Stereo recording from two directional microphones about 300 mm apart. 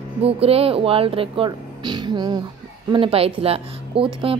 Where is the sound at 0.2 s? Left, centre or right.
Centre.